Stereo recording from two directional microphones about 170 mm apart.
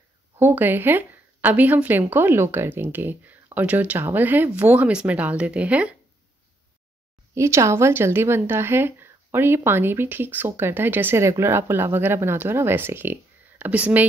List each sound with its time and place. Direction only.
0.4 s speech: 10° right (ahead or behind)
7.3 s speech: 15° right (ahead or behind)